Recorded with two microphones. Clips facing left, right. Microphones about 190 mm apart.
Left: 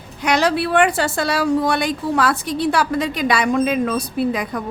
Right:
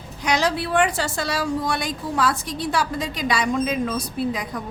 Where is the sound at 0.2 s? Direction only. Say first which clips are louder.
Left 4 dB; 60° left (ahead or behind).